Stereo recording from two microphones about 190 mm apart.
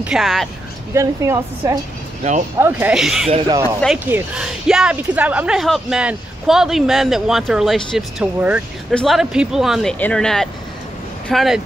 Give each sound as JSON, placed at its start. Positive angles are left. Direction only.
{"t": 0.0, "sound": "speech", "side_deg": 0}
{"t": 0.9, "sound": "a woman's voice", "side_deg": -15}
{"t": 3.3, "sound": "speech", "side_deg": -30}
{"t": 3.8, "sound": "a woman's voice", "side_deg": -5}